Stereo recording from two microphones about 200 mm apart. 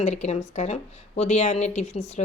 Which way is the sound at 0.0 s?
35° left (ahead or behind).